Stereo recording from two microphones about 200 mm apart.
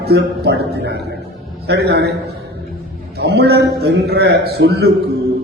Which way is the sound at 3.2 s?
55° right (ahead or behind).